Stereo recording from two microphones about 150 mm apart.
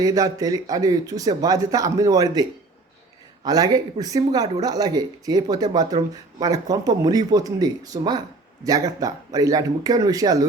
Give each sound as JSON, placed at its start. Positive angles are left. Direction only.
{"t": 0.0, "sound": "speech", "side_deg": -20}